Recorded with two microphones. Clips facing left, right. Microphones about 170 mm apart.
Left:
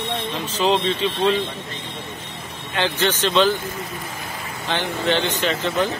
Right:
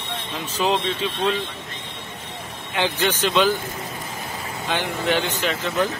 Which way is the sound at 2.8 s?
10° right (ahead or behind).